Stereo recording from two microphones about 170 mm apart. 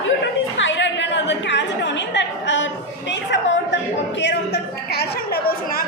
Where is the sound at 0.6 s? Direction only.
90° left.